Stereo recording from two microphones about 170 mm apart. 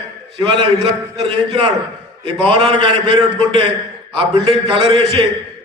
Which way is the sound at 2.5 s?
30° right (ahead or behind).